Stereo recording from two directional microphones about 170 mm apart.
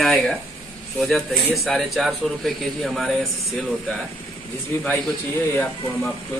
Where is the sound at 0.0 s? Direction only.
Centre (ahead or behind).